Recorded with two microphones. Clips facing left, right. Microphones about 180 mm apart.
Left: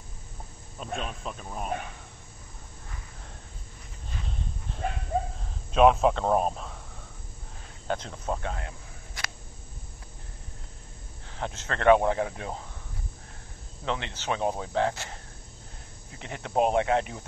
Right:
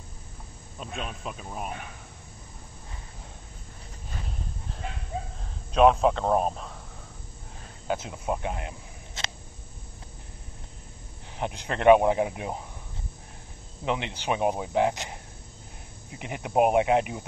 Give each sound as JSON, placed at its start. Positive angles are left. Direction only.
{"t": 0.7, "sound": "speech", "side_deg": 0}
{"t": 5.7, "sound": "speech", "side_deg": 0}
{"t": 7.9, "sound": "speech", "side_deg": -10}
{"t": 11.3, "sound": "speech", "side_deg": -15}
{"t": 13.8, "sound": "speech", "side_deg": -15}